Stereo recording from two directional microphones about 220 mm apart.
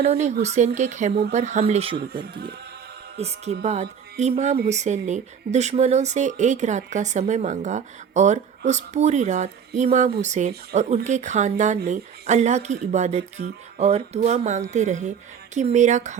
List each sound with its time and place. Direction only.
0.0 s speech: 30° right (ahead or behind)
2.2 s speech: 45° right (ahead or behind)
3.2 s speech: 30° right (ahead or behind)